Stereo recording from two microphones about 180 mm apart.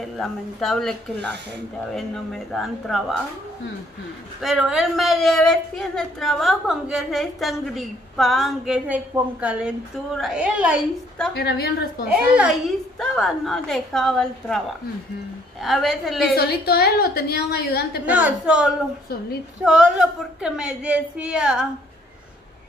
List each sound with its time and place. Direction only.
0.0 s a woman's voice: centre (ahead or behind)
2.0 s a woman's voice: centre (ahead or behind)
4.4 s a woman's voice: 5° right (ahead or behind)
11.3 s a woman's voice: 60° left (ahead or behind)
12.1 s a woman's voice: 5° right (ahead or behind)
15.6 s a woman's voice: centre (ahead or behind)
16.3 s a woman's voice: 60° left (ahead or behind)
18.0 s a woman's voice: 10° right (ahead or behind)